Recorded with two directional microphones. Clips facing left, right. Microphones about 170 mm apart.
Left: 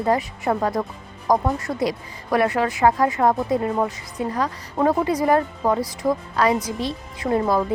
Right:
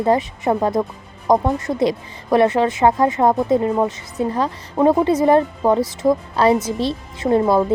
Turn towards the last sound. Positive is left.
turn(degrees=-25)  # may be behind; listen again after turning